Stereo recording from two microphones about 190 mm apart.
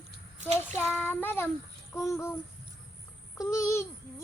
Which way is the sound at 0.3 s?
40° right (ahead or behind).